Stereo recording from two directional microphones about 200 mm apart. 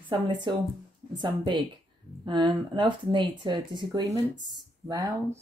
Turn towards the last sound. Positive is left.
turn(degrees=-20)  # may be behind; listen again after turning